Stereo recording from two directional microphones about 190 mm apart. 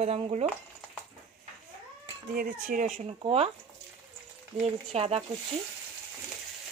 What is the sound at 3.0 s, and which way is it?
Speech, 30° right (ahead or behind).